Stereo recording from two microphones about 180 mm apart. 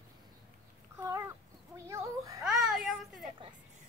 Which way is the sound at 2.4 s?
Centre (ahead or behind).